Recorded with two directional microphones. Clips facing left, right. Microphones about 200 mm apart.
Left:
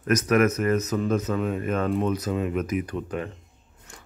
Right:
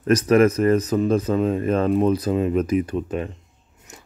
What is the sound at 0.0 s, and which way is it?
Speech, 30° right (ahead or behind).